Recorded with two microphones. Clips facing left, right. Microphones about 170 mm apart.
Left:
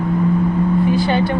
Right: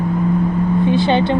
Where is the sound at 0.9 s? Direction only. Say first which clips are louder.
Right 2 dB; 25° right (ahead or behind).